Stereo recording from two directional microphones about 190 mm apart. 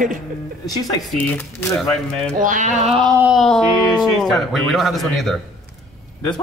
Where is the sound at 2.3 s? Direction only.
45° right (ahead or behind); by 3.1 s 30° right (ahead or behind).